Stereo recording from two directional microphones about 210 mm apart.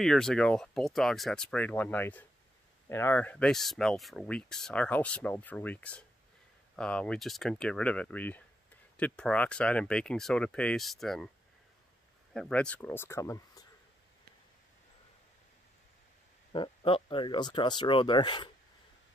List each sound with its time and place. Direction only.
0.0 s speech: centre (ahead or behind)
12.4 s speech: 5° left (ahead or behind)
16.5 s speech: 25° left (ahead or behind)